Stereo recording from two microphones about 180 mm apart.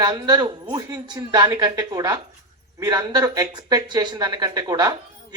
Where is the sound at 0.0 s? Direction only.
20° right (ahead or behind).